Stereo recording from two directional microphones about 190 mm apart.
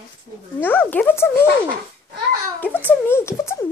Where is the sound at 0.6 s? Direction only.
10° left (ahead or behind).